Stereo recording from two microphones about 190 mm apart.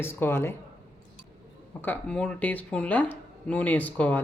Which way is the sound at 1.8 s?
5° left (ahead or behind).